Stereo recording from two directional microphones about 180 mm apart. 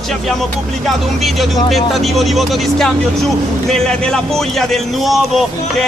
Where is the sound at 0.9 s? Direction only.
Centre (ahead or behind).